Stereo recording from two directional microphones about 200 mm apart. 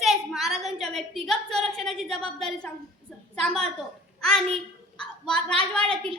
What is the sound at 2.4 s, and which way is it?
A woman's voice, centre (ahead or behind).